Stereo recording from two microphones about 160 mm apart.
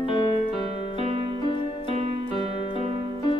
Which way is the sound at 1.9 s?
40° right (ahead or behind).